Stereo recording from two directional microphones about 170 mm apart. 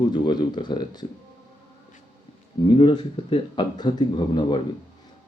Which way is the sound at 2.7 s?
30° left (ahead or behind).